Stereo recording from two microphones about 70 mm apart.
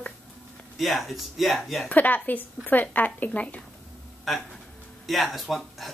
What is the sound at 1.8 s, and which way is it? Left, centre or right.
Speech, left.